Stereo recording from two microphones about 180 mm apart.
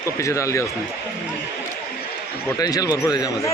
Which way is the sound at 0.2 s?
15° left (ahead or behind).